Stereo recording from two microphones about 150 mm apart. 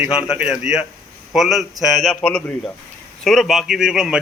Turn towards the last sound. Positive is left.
turn(degrees=-5)  # may be behind; listen again after turning